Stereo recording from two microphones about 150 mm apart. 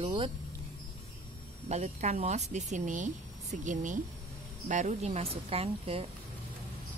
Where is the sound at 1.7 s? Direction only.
50° right (ahead or behind).